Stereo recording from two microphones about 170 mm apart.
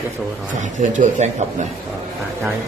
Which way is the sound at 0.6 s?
45° right (ahead or behind).